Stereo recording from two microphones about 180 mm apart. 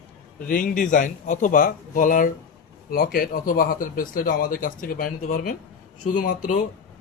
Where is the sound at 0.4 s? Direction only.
50° left (ahead or behind).